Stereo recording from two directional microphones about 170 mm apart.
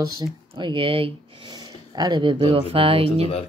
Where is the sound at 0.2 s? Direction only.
30° right (ahead or behind).